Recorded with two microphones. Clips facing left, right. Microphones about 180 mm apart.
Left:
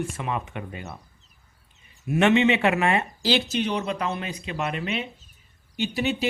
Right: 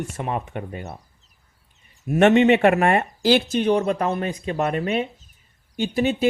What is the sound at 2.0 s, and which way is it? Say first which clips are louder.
Speech: right 4 dB; 45° right (ahead or behind).